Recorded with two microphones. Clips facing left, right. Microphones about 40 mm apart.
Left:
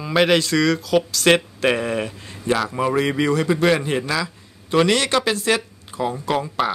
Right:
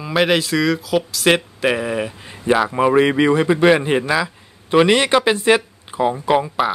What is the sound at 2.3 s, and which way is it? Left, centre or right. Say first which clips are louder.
A man's voice: right 5 dB; right.